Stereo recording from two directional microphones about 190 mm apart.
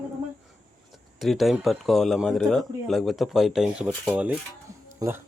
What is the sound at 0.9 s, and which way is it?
A man's voice, centre (ahead or behind).